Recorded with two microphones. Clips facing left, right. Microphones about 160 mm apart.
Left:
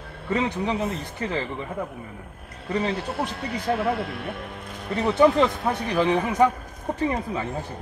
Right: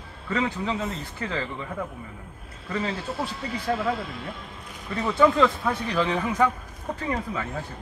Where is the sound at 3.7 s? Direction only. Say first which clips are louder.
Left 2 dB; 65° left (ahead or behind).